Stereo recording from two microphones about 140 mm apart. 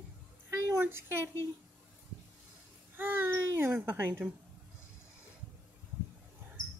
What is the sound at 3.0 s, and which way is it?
Baby cry, 15° right (ahead or behind).